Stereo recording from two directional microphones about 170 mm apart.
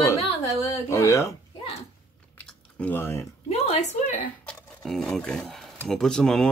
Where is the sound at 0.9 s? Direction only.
15° left (ahead or behind).